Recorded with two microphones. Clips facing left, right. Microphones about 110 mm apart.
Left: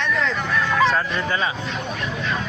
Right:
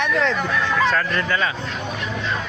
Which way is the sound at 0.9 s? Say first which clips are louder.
Right 1 dB; 15° left (ahead or behind).